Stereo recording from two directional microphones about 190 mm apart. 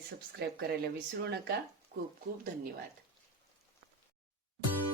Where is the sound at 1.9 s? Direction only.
55° right (ahead or behind).